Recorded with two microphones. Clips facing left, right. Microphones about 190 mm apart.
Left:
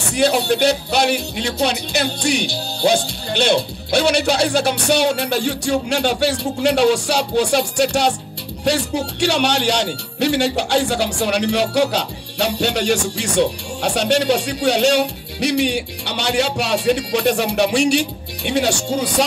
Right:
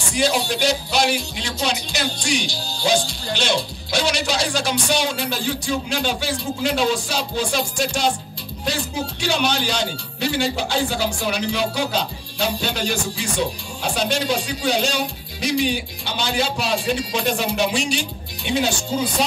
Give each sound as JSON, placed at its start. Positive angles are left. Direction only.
{"t": 0.0, "sound": "speech", "side_deg": 60}